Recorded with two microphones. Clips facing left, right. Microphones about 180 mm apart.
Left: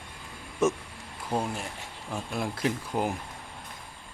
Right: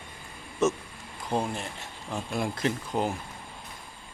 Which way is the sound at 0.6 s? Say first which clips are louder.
Even; 10° left (ahead or behind).